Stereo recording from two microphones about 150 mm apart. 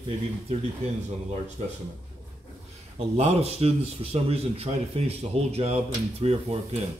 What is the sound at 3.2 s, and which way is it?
A man's voice, 45° right (ahead or behind).